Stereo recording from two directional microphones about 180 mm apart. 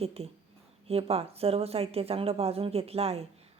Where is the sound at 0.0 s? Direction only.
35° right (ahead or behind).